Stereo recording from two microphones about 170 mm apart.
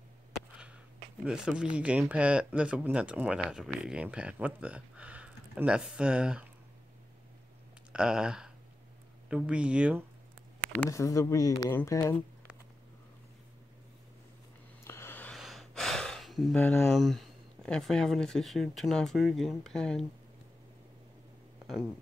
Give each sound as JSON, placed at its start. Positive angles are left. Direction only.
{"t": 1.2, "sound": "speech", "side_deg": -5}
{"t": 7.9, "sound": "speech", "side_deg": -5}
{"t": 10.7, "sound": "speech", "side_deg": 15}
{"t": 14.9, "sound": "a sound", "side_deg": 15}
{"t": 15.3, "sound": "speech", "side_deg": 0}